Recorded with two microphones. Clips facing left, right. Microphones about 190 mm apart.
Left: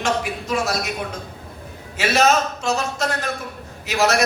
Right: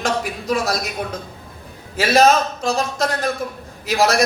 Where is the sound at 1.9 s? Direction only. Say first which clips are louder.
Right 3 dB; 35° right (ahead or behind).